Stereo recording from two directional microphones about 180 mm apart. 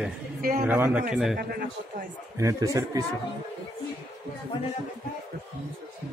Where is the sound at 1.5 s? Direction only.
55° right (ahead or behind).